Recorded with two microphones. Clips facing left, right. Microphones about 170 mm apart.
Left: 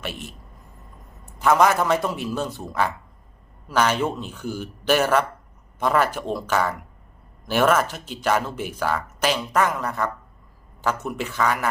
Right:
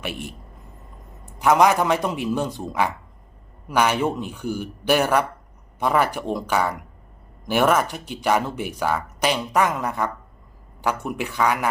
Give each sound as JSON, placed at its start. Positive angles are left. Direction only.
{"t": 0.0, "sound": "speech", "side_deg": -15}
{"t": 1.4, "sound": "speech", "side_deg": -15}